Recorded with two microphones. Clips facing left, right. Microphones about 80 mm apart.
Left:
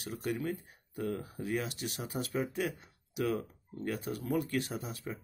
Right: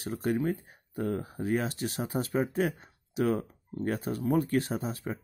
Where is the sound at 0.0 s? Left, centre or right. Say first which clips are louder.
Right 6 dB; right.